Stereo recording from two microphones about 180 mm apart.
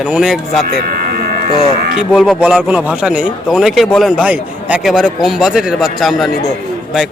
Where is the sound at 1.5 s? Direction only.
30° left (ahead or behind).